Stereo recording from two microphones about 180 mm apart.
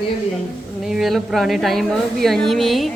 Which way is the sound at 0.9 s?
Centre (ahead or behind).